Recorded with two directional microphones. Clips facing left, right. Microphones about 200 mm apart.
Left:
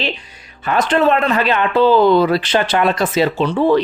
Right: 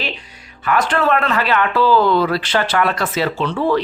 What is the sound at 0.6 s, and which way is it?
Speech, 25° left (ahead or behind).